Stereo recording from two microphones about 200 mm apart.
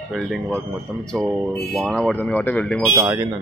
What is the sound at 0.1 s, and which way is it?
Speech, centre (ahead or behind).